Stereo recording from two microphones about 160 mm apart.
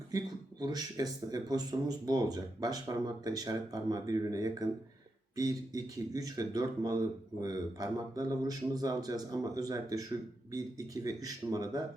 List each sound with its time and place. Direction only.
0.1 s speech: 25° right (ahead or behind)